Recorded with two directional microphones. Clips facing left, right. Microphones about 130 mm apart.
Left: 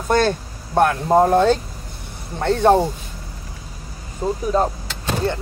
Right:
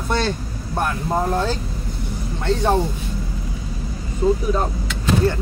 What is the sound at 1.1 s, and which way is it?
Speech, 60° left (ahead or behind).